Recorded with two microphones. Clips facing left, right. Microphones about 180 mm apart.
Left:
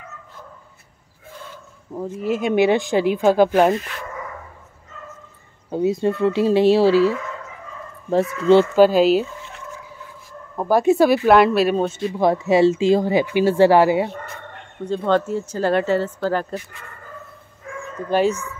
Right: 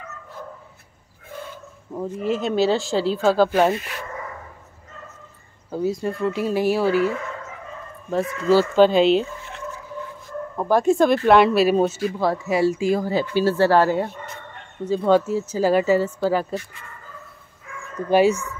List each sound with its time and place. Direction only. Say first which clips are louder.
2.0 s speech: left 1 dB; 10° left (ahead or behind)
5.7 s speech: left 4 dB; 20° left (ahead or behind)
8.7 s speech: left 1 dB; 5° left (ahead or behind)
10.6 s speech: left 2 dB; 5° left (ahead or behind)
12.1 s speech: left 5 dB; 20° left (ahead or behind)
14.9 s speech: right 2 dB; 5° right (ahead or behind)
18.1 s speech: right 2 dB; 10° right (ahead or behind)